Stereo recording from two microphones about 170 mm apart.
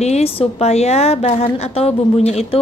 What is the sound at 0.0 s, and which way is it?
A woman's voice, 40° left (ahead or behind).